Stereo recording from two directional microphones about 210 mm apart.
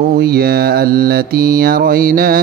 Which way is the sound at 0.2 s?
45° right (ahead or behind).